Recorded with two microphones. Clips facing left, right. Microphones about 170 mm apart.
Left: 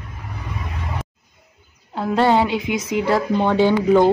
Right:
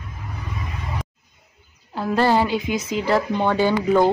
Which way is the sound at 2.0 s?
20° left (ahead or behind).